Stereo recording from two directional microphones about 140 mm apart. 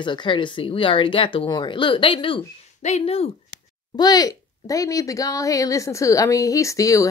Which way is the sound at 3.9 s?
30° left (ahead or behind).